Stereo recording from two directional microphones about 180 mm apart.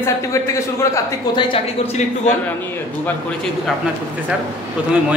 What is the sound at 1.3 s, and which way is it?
Speech, 35° left (ahead or behind).